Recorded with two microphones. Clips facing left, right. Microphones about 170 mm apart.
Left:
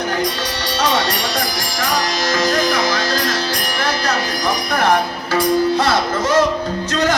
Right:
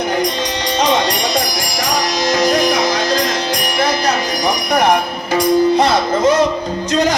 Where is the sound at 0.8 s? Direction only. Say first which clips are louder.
Right 3 dB; 15° right (ahead or behind).